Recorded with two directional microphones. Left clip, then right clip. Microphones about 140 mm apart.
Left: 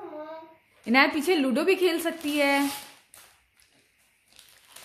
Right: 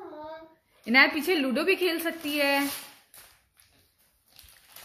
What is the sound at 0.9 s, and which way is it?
A woman's voice, 20° left (ahead or behind).